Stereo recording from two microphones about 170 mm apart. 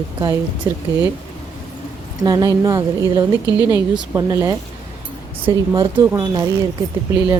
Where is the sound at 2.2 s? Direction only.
20° right (ahead or behind).